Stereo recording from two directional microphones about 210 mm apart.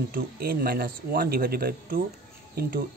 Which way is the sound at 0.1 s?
45° right (ahead or behind).